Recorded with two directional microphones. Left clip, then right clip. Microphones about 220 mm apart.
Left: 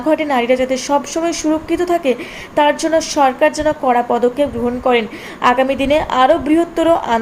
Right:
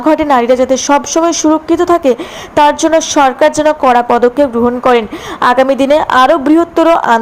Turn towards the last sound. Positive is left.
turn(degrees=-25)  # may be behind; listen again after turning